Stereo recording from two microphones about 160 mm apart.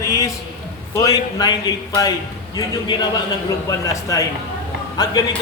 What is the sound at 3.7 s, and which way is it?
A man's voice, 20° left (ahead or behind).